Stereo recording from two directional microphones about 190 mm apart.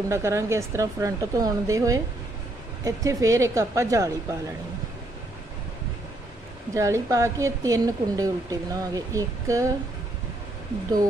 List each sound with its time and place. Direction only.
0.1 s a woman's voice: 15° right (ahead or behind)
6.7 s a woman's voice: 15° right (ahead or behind)